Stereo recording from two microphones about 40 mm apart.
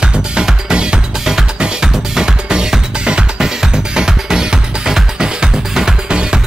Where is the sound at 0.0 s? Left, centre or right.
Right.